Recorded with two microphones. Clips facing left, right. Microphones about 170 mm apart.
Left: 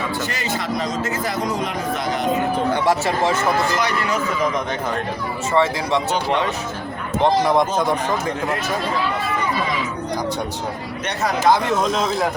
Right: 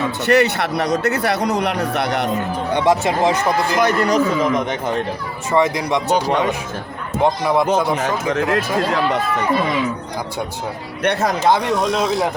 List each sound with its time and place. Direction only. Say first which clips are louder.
0.3 s speech: right 9 dB; 65° right (ahead or behind)
2.7 s speech: right 3 dB; 20° right (ahead or behind)
3.8 s speech: right 6 dB; 45° right (ahead or behind)
5.5 s speech: right 2 dB; 15° right (ahead or behind)
6.1 s speech: right 3 dB; 40° right (ahead or behind)
8.3 s speech: right 4 dB; 90° right
11.0 s speech: right 6 dB; 60° right (ahead or behind)